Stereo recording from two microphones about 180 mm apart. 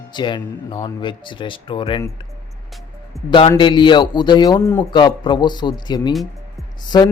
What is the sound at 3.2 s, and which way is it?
A man's voice, 30° left (ahead or behind).